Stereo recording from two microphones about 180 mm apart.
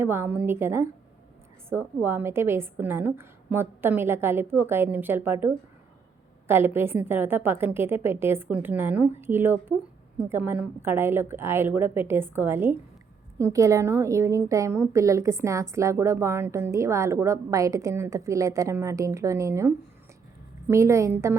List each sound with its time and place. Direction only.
0.0 s a woman's voice: 15° right (ahead or behind)
6.5 s a woman's voice: 15° right (ahead or behind)